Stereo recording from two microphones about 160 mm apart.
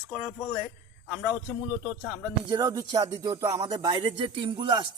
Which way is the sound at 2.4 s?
25° right (ahead or behind).